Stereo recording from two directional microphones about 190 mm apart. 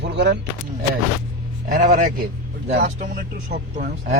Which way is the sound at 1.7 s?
40° right (ahead or behind).